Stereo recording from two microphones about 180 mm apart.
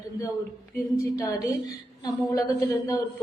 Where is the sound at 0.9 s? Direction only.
20° left (ahead or behind).